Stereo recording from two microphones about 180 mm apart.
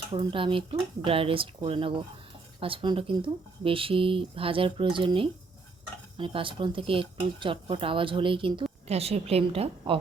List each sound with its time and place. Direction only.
0.1 s a woman's voice: 30° right (ahead or behind)